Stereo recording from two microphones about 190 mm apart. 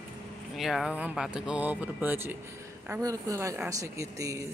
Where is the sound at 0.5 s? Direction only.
Centre (ahead or behind).